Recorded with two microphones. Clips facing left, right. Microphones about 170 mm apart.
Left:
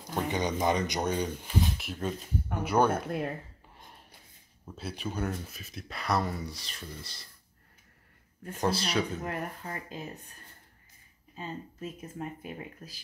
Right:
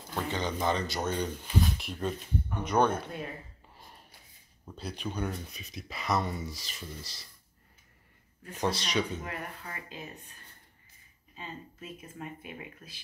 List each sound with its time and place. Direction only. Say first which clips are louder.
0.1 s speech: left 3 dB; 15° left (ahead or behind)
3.6 s gasp: even; centre (ahead or behind)
4.6 s speech: left 1 dB; centre (ahead or behind)
8.5 s speech: left 1 dB; centre (ahead or behind)
9.2 s speech: left 4 dB; 40° left (ahead or behind)
11.3 s speech: left 4 dB; 40° left (ahead or behind)